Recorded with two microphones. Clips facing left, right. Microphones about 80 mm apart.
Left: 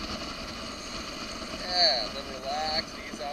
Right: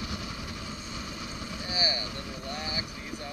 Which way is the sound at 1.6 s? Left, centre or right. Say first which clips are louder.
Left 5 dB; left.